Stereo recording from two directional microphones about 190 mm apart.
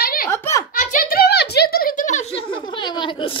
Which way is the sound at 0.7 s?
45° left (ahead or behind).